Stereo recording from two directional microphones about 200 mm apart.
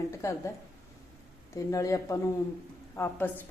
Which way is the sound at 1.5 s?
15° left (ahead or behind).